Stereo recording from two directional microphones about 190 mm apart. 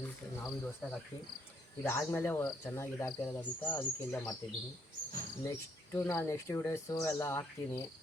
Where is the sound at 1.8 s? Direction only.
15° left (ahead or behind).